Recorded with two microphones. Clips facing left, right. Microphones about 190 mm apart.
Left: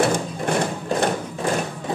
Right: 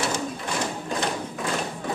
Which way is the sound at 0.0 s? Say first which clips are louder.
Left 7 dB; 55° left (ahead or behind).